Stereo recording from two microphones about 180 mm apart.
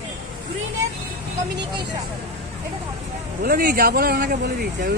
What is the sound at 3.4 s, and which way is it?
Speech, 50° right (ahead or behind).